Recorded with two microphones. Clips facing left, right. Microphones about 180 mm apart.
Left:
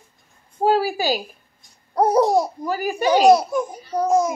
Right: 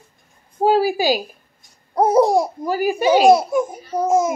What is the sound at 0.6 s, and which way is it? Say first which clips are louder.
A woman's voice: right 3 dB; 15° right (ahead or behind).